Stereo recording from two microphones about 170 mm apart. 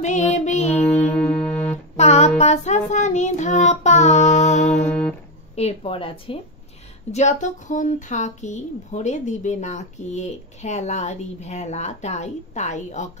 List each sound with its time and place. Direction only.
0.0 s music: 40° left (ahead or behind)
2.0 s child singing: 40° left (ahead or behind)
5.6 s speech: 35° left (ahead or behind)
7.1 s speech: 40° left (ahead or behind)